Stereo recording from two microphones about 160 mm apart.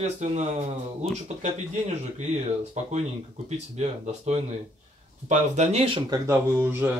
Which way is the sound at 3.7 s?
45° right (ahead or behind).